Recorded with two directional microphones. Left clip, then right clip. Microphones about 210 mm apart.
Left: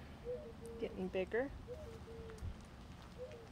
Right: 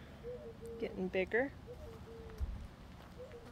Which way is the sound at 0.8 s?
20° right (ahead or behind).